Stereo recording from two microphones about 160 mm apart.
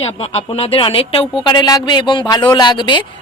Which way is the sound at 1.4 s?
25° left (ahead or behind).